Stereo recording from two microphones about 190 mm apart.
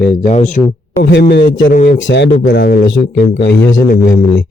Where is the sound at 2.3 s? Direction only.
50° left (ahead or behind).